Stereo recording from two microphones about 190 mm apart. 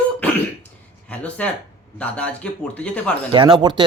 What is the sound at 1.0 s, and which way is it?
A woman's voice, 5° left (ahead or behind).